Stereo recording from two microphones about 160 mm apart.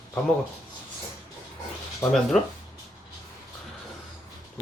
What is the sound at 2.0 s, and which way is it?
Speech, 20° left (ahead or behind).